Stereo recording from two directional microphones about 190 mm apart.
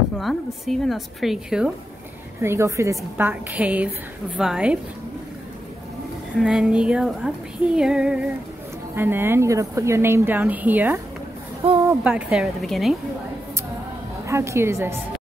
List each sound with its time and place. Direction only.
0.2 s speech: centre (ahead or behind)
2.4 s speech: 15° right (ahead or behind)
6.4 s speech: 5° right (ahead or behind)
11.6 s speech: 30° right (ahead or behind)
12.0 s speech: 5° right (ahead or behind)
14.2 s speech: 15° right (ahead or behind)